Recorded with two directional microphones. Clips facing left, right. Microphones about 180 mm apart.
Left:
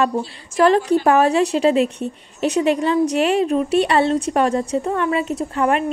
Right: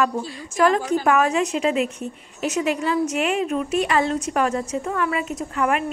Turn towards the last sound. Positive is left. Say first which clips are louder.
# left 4 dB
turn(degrees=30)  # may be behind; listen again after turning